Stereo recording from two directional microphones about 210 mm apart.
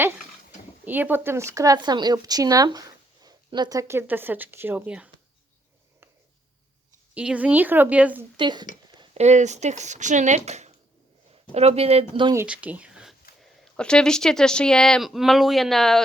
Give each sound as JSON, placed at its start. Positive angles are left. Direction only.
{"t": 0.9, "sound": "speech", "side_deg": -10}
{"t": 7.1, "sound": "speech", "side_deg": -5}
{"t": 8.4, "sound": "speech", "side_deg": -20}
{"t": 9.0, "sound": "speech", "side_deg": -30}
{"t": 12.4, "sound": "speech", "side_deg": -5}